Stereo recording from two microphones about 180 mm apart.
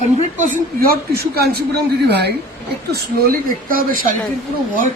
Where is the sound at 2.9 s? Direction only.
50° right (ahead or behind).